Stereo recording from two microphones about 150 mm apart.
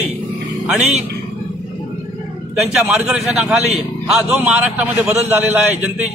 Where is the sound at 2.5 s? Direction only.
5° right (ahead or behind).